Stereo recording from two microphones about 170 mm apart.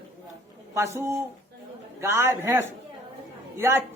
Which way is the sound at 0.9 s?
15° right (ahead or behind).